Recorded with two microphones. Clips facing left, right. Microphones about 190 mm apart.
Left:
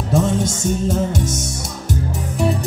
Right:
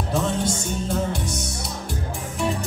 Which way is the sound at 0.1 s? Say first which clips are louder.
Left 6 dB; 45° left (ahead or behind).